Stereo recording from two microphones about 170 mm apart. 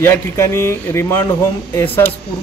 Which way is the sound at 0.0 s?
15° left (ahead or behind).